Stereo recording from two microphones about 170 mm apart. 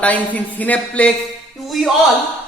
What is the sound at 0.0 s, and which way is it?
Speech, 10° left (ahead or behind).